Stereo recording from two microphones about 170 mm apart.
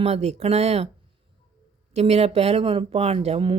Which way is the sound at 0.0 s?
40° right (ahead or behind).